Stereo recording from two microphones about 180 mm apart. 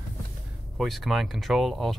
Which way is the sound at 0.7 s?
Centre (ahead or behind).